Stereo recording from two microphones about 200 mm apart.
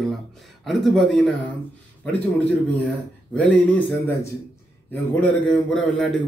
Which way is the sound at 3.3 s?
5° left (ahead or behind).